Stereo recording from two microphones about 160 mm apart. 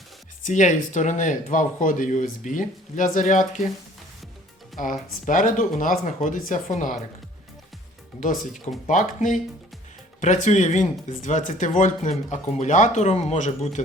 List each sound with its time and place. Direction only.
0.4 s speech: 50° left (ahead or behind)
4.8 s speech: 55° left (ahead or behind)
8.2 s speech: 55° left (ahead or behind)